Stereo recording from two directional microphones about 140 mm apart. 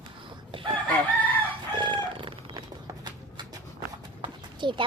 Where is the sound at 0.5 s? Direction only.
35° right (ahead or behind).